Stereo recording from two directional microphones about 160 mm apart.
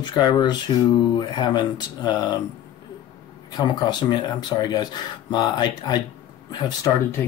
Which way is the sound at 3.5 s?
25° left (ahead or behind).